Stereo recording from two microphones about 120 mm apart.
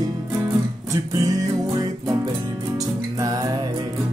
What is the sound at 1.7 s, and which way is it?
Music, 30° right (ahead or behind).